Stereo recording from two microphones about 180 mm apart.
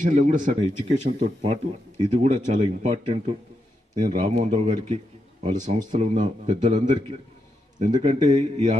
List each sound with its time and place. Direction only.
0.0 s speech: 45° right (ahead or behind)
0.6 s a man's voice: 30° right (ahead or behind)